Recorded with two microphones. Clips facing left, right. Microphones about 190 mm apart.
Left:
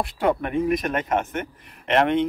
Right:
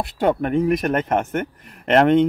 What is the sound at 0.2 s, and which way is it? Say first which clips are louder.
Speech: right 4 dB; 40° right (ahead or behind).